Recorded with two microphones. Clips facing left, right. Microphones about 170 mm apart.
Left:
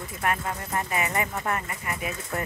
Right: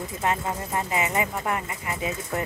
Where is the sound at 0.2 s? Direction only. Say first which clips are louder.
Right 1 dB; 20° right (ahead or behind).